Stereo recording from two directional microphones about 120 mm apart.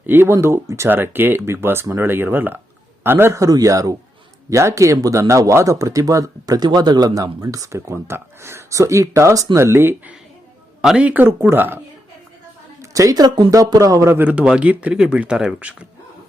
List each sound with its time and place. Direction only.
0.0 s speech: 20° right (ahead or behind)
10.8 s speech: 5° right (ahead or behind)
12.8 s speech: 30° right (ahead or behind); by 15.9 s 5° right (ahead or behind)